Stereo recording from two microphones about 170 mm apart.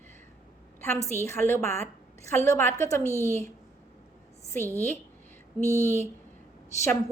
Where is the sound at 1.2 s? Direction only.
15° left (ahead or behind).